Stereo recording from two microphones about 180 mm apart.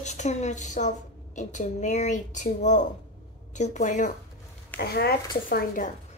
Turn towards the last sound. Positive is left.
turn(degrees=50)  # may be behind; listen again after turning